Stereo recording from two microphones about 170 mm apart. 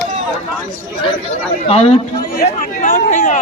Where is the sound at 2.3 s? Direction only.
50° left (ahead or behind).